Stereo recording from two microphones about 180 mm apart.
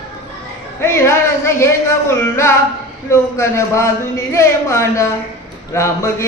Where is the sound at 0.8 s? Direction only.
15° left (ahead or behind).